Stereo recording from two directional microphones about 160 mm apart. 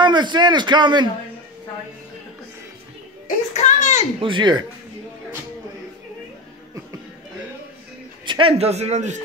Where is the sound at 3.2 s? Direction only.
50° left (ahead or behind).